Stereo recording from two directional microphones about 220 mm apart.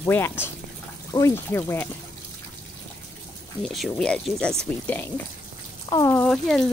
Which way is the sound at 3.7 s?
Centre (ahead or behind).